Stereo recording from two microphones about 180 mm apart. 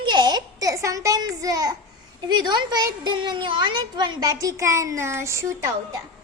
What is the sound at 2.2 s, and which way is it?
A child's voice, 25° right (ahead or behind).